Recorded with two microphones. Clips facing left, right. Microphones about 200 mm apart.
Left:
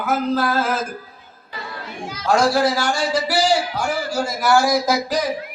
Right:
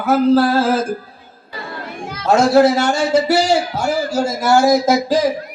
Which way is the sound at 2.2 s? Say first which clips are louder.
Right 6 dB; 25° right (ahead or behind).